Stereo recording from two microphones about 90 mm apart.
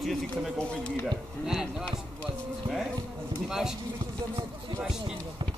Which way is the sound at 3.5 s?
5° right (ahead or behind).